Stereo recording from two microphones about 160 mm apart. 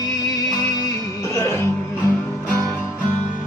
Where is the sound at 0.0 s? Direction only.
25° left (ahead or behind).